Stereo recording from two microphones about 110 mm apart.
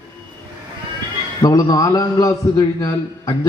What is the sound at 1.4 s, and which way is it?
A man's voice, 35° left (ahead or behind).